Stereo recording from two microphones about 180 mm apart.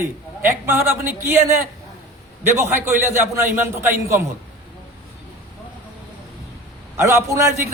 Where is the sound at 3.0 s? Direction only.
15° right (ahead or behind).